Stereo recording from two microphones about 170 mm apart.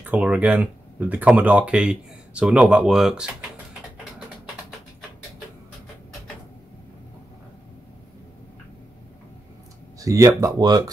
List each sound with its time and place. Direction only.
0.0 s speech: 10° right (ahead or behind)
9.9 s speech: 20° right (ahead or behind)